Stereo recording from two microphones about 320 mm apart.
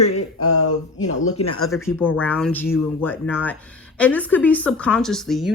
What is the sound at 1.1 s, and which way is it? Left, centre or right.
Speech, left.